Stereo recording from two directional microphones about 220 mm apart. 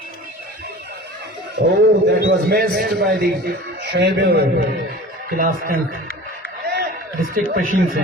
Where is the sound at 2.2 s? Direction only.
45° right (ahead or behind).